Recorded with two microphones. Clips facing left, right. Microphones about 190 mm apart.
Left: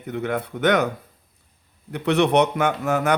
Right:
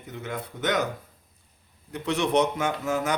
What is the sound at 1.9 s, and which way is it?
A man's voice, 65° left (ahead or behind).